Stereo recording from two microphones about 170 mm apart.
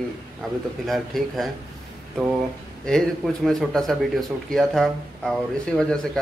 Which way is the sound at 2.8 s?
Centre (ahead or behind).